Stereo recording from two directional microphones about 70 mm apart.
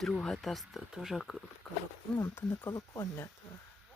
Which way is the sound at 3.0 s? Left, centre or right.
Left.